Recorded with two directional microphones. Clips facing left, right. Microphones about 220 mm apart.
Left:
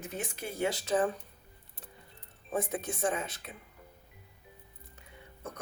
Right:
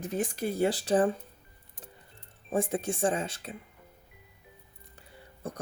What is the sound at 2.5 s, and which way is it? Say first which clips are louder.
Speech: right 4 dB; 30° right (ahead or behind).